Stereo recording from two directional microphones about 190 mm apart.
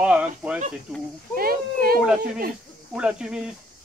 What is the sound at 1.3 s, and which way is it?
Speech, 50° right (ahead or behind).